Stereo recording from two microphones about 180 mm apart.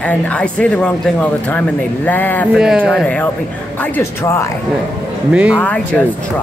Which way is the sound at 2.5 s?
5° right (ahead or behind).